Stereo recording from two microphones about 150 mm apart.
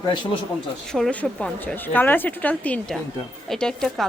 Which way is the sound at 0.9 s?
5° left (ahead or behind).